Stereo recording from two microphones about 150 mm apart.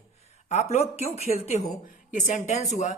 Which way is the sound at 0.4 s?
50° left (ahead or behind).